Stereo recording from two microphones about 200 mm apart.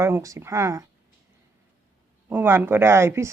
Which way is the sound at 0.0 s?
15° right (ahead or behind).